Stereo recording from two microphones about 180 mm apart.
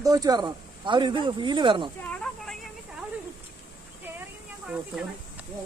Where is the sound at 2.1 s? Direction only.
5° left (ahead or behind).